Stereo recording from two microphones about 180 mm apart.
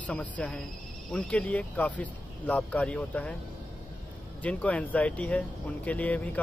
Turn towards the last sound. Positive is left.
turn(degrees=10)  # may be behind; listen again after turning